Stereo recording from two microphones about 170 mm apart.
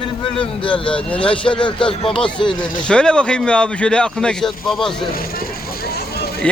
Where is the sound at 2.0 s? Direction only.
30° left (ahead or behind).